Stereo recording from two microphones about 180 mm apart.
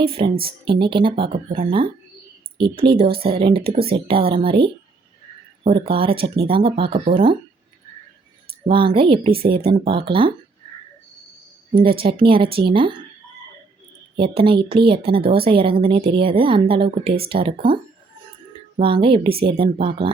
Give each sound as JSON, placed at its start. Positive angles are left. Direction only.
{"t": 0.0, "sound": "speech", "side_deg": -30}
{"t": 8.6, "sound": "speech", "side_deg": -30}
{"t": 11.7, "sound": "speech", "side_deg": -30}
{"t": 14.2, "sound": "speech", "side_deg": -30}
{"t": 18.8, "sound": "speech", "side_deg": -30}